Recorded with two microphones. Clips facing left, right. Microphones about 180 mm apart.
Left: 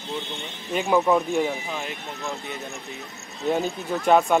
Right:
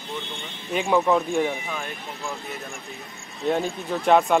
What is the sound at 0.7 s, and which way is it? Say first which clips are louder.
Speech: even; centre (ahead or behind).